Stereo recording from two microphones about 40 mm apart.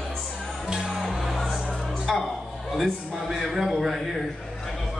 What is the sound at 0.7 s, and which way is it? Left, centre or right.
Music, centre.